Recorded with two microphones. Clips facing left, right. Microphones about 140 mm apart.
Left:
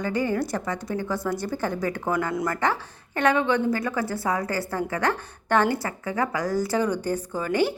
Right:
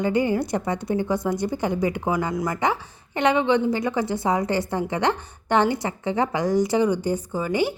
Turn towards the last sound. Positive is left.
turn(degrees=-15)  # may be behind; listen again after turning